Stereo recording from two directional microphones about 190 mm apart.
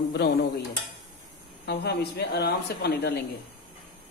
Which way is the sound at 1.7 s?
60° left (ahead or behind).